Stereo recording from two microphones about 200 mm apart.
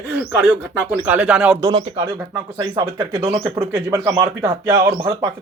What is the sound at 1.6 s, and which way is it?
Speech, 25° right (ahead or behind).